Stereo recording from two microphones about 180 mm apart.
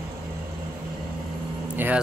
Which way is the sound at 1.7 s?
10° right (ahead or behind).